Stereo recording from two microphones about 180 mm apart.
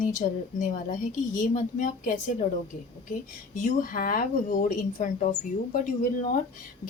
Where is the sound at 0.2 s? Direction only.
45° left (ahead or behind).